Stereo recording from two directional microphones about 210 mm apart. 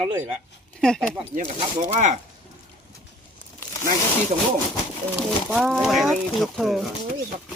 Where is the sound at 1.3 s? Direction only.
35° right (ahead or behind).